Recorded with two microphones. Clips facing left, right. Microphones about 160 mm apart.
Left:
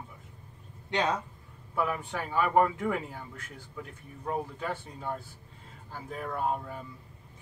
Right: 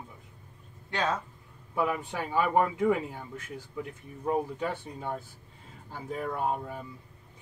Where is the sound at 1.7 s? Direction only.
15° right (ahead or behind).